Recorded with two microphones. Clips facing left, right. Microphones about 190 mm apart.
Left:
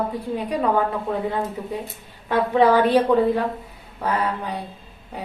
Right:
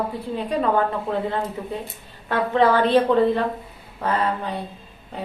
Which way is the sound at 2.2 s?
15° left (ahead or behind).